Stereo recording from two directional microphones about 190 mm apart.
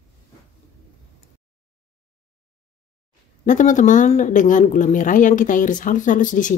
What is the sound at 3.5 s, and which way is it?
A woman's voice, 40° left (ahead or behind).